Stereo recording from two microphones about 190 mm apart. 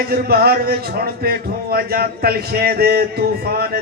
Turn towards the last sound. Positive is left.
turn(degrees=-55)  # may be behind; listen again after turning